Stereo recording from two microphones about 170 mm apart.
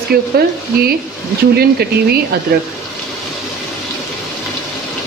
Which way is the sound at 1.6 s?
70° right (ahead or behind).